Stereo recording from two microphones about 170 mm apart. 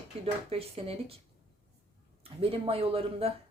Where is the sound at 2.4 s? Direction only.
35° right (ahead or behind).